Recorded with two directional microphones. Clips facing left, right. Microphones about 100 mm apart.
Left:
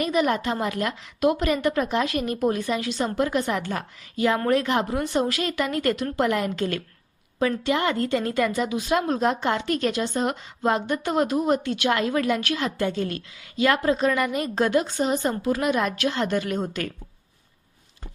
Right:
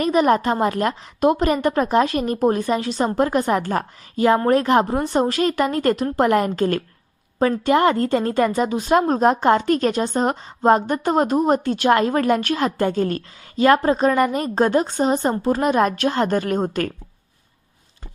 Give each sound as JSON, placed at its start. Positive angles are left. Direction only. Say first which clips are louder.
{"t": 0.0, "sound": "a woman's voice", "louder": "right 6 dB", "side_deg": -40}